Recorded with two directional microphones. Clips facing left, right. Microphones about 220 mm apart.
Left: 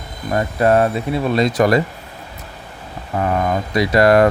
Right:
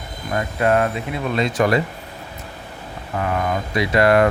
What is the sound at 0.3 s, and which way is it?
Speech, 35° left (ahead or behind).